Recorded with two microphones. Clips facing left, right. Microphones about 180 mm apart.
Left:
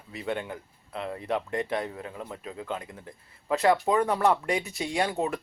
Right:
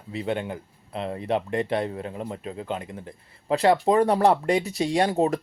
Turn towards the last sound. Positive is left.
turn(degrees=-35)  # may be behind; listen again after turning